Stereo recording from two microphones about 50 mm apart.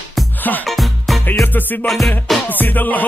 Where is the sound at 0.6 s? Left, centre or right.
Centre.